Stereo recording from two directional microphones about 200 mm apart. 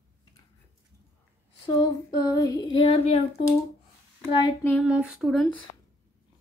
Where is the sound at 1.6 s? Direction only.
20° left (ahead or behind).